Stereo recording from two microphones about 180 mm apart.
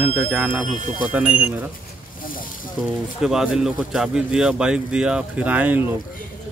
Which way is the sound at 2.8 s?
5° right (ahead or behind).